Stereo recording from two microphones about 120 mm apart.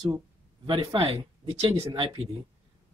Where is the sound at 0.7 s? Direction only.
45° right (ahead or behind).